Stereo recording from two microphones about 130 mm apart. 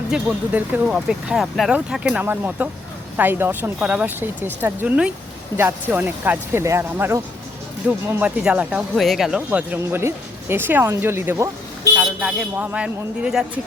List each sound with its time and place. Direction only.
0.1 s speech: 10° right (ahead or behind)
9.5 s speech: 15° right (ahead or behind)
11.9 s speech: 10° right (ahead or behind)